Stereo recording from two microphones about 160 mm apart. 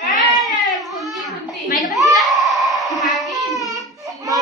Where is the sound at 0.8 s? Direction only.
Centre (ahead or behind).